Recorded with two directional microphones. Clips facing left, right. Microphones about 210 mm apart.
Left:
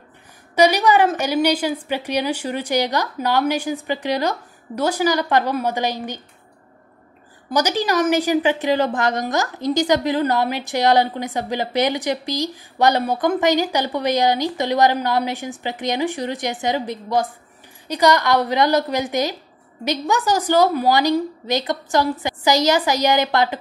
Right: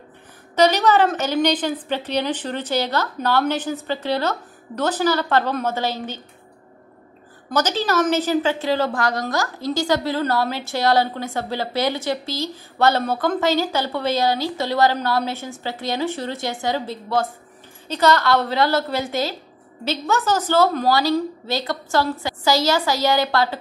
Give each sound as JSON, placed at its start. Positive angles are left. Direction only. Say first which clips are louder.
{"t": 0.6, "sound": "a woman's voice", "louder": "left 1 dB", "side_deg": 10}
{"t": 7.5, "sound": "a woman's voice", "louder": "left 1 dB", "side_deg": 15}